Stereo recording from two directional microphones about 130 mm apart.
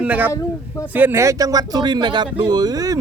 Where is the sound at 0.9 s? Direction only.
20° right (ahead or behind).